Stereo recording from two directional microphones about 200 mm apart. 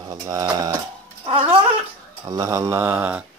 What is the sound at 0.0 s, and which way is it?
Speech, 15° right (ahead or behind).